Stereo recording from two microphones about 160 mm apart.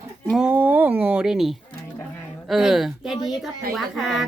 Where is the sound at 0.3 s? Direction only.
5° right (ahead or behind).